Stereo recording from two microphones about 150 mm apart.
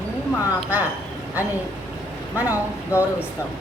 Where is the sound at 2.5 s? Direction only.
15° left (ahead or behind).